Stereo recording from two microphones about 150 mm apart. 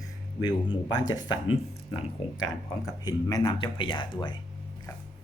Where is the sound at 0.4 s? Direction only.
30° left (ahead or behind).